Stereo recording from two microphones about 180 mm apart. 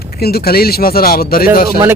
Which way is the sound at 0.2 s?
60° left (ahead or behind).